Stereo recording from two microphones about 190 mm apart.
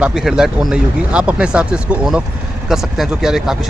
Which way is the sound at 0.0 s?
Centre (ahead or behind).